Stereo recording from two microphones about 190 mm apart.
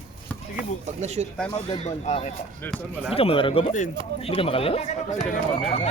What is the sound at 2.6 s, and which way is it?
Speech, 5° left (ahead or behind).